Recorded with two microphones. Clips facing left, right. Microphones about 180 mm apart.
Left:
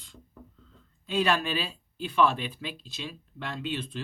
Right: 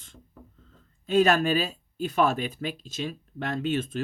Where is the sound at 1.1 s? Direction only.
45° right (ahead or behind).